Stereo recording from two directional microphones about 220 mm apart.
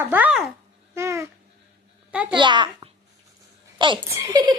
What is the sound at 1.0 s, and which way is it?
Speech, 15° right (ahead or behind).